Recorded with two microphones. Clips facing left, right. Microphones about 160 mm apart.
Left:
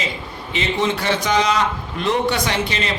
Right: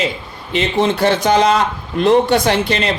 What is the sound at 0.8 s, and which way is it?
Speech, 35° right (ahead or behind).